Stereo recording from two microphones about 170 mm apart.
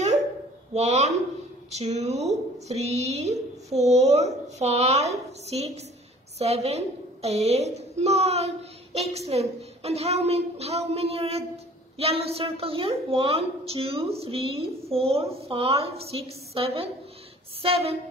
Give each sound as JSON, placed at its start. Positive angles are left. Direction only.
{"t": 0.7, "sound": "a woman's voice", "side_deg": -40}